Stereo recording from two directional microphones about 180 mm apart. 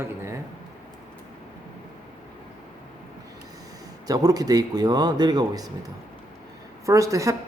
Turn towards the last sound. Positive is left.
turn(degrees=-20)  # may be behind; listen again after turning